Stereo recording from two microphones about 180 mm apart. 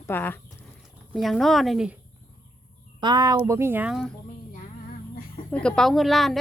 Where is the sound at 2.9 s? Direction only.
25° right (ahead or behind).